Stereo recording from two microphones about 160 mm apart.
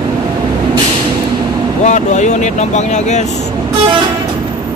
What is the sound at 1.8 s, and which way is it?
Vehicle, 45° left (ahead or behind).